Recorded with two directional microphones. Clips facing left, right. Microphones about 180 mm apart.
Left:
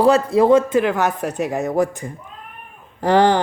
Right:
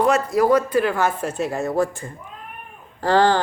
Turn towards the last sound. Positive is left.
turn(degrees=20)  # may be behind; listen again after turning